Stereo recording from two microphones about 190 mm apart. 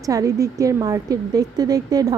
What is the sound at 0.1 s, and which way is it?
A woman's voice, 15° right (ahead or behind).